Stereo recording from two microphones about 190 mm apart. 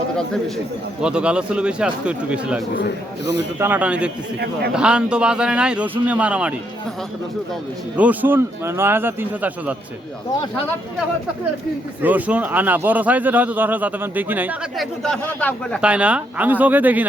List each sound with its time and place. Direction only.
1.0 s a man's voice: 5° right (ahead or behind)
2.7 s a man's voice: 65° left (ahead or behind)
3.6 s a man's voice: 10° right (ahead or behind)
7.9 s speech: 10° right (ahead or behind)
12.0 s speech: 10° right (ahead or behind)
15.0 s a man's voice: 5° left (ahead or behind)
15.8 s speech: 5° right (ahead or behind)